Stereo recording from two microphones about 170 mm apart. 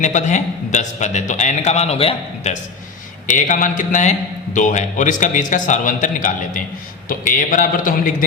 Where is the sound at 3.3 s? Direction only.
50° left (ahead or behind).